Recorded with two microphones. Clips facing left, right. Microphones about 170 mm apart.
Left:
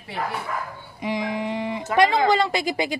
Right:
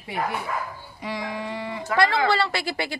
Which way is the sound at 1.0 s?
20° left (ahead or behind).